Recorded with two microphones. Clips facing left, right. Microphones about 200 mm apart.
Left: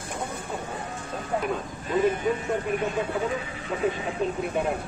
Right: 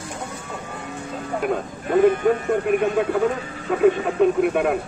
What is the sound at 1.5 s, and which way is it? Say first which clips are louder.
Speech: right 6 dB; 55° right (ahead or behind).